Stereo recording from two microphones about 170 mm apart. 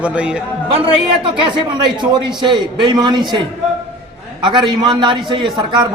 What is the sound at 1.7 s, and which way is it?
A man's voice, 25° right (ahead or behind).